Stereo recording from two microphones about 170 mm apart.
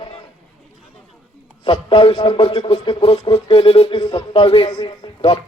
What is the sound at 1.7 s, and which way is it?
Speech, 30° left (ahead or behind).